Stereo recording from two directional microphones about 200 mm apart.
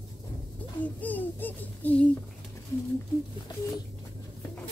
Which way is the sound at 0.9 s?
10° left (ahead or behind).